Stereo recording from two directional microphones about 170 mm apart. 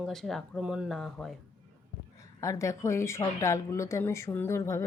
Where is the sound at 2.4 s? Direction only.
20° left (ahead or behind).